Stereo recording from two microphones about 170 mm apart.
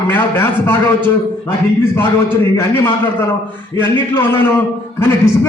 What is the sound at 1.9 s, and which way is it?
A man's voice, 15° left (ahead or behind).